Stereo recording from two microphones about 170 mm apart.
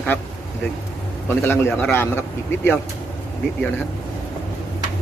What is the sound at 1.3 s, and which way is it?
A man's voice, 10° left (ahead or behind).